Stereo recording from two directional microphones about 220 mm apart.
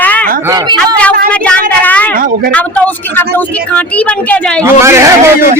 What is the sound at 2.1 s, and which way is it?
Speech, 40° right (ahead or behind).